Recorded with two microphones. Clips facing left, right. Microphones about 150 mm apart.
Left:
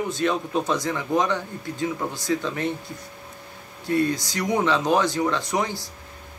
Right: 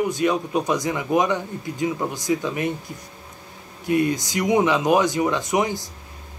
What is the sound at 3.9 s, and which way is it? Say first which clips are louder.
Speech: right 2 dB; 15° right (ahead or behind).